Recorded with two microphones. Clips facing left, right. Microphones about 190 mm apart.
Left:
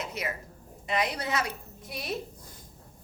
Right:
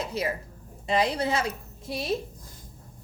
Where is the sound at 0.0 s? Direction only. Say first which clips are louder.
Right 5 dB; 30° right (ahead or behind).